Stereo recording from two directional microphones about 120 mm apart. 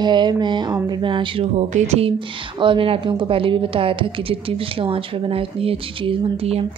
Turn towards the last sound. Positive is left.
turn(degrees=-55)  # may be behind; listen again after turning